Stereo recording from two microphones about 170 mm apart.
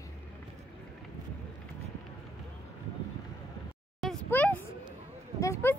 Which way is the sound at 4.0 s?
5° left (ahead or behind).